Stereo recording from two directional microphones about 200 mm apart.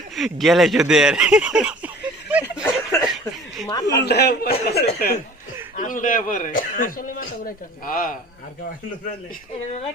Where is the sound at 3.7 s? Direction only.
20° left (ahead or behind).